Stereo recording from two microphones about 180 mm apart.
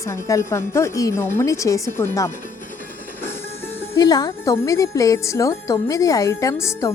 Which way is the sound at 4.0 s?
20° left (ahead or behind).